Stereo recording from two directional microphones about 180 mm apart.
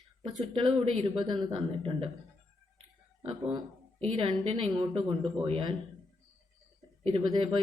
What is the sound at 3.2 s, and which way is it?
A woman's voice, 30° right (ahead or behind).